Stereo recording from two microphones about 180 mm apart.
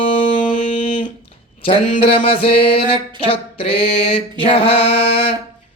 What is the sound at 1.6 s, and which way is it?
Mantra, 30° left (ahead or behind).